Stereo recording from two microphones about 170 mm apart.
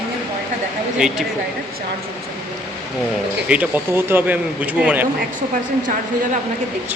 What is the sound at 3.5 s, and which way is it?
Speech, 10° right (ahead or behind).